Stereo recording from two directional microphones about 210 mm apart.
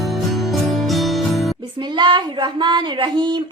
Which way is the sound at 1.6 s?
20° right (ahead or behind).